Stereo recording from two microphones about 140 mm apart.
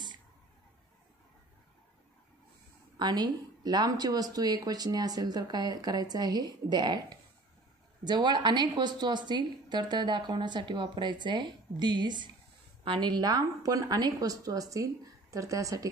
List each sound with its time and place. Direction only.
3.0 s a woman's voice: 30° right (ahead or behind)